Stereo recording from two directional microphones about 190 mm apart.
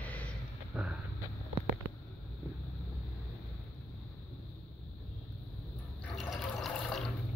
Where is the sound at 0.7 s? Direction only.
5° right (ahead or behind).